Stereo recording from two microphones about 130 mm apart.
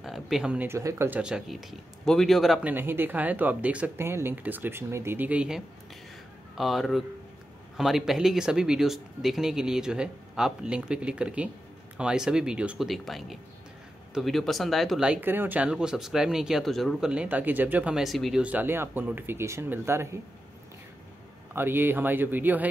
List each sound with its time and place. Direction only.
0.0 s a sound: 5° right (ahead or behind)
0.7 s speech: 20° right (ahead or behind)
1.2 s speech: 5° right (ahead or behind)
2.6 s speech: 15° right (ahead or behind)
21.5 s speech: 15° right (ahead or behind)